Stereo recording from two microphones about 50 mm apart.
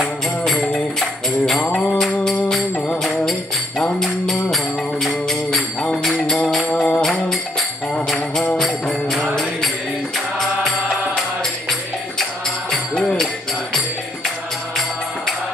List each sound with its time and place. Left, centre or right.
0.9 s music: centre
1.7 s music: left
4.0 s music: centre
6.7 s music: left
7.0 s music: centre
12.9 s music: centre